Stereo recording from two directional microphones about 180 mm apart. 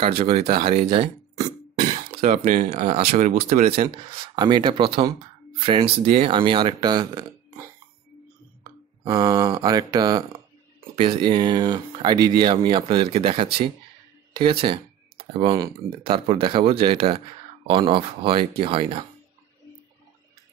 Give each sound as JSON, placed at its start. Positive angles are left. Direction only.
{"t": 0.0, "sound": "speech", "side_deg": -30}
{"t": 2.2, "sound": "speech", "side_deg": -50}
{"t": 8.6, "sound": "speech", "side_deg": -20}